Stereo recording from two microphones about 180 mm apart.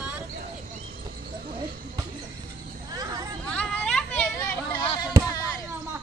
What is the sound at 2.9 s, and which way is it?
Speech, 20° right (ahead or behind).